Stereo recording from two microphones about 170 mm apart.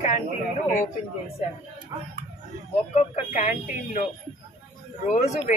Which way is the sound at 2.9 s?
40° left (ahead or behind).